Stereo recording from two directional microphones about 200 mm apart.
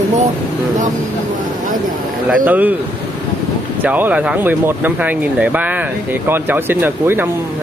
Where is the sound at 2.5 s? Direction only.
10° right (ahead or behind).